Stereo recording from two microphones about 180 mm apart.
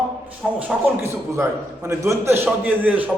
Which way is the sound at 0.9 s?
15° right (ahead or behind).